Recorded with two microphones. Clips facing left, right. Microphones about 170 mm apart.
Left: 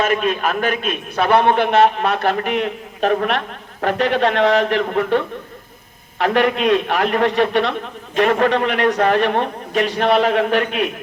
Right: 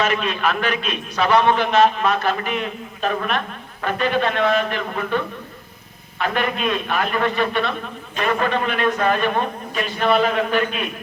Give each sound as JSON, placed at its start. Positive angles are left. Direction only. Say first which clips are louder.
{"t": 0.0, "sound": "a man's voice", "louder": "left 3 dB", "side_deg": 50}